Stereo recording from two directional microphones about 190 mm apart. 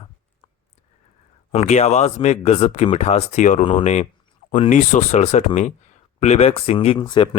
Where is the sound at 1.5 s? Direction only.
35° left (ahead or behind).